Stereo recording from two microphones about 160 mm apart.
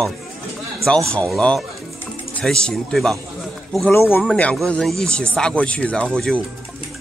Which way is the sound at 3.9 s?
15° left (ahead or behind).